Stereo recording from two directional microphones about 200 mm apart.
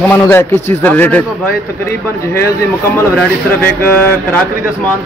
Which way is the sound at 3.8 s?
10° left (ahead or behind).